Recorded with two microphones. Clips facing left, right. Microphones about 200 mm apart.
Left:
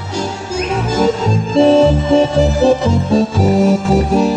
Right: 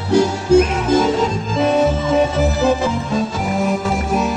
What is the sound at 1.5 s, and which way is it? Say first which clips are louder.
Music: left 7 dB; 30° left (ahead or behind).